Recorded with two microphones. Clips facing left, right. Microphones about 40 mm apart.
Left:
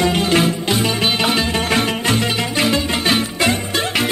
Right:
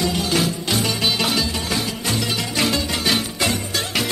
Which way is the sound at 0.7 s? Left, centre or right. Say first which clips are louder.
Left 3 dB; left.